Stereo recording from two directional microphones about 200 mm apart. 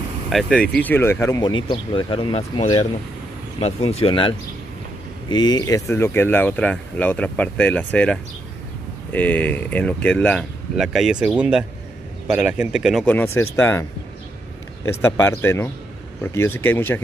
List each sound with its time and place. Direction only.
0.3 s speech: 5° left (ahead or behind)
13.0 s speech: 10° left (ahead or behind)
14.9 s speech: 10° left (ahead or behind)